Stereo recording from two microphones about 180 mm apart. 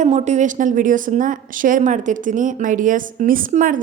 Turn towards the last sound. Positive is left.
turn(degrees=-45)  # may be behind; listen again after turning